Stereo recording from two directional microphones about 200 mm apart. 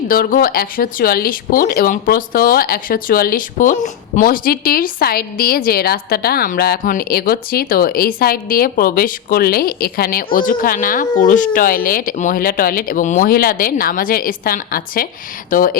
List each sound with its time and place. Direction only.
0.1 s speech: 45° left (ahead or behind)